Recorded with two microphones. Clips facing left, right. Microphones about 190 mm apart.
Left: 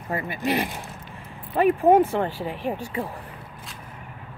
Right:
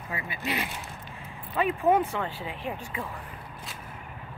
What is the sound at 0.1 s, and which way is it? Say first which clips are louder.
Speech: left 8 dB; 45° left (ahead or behind).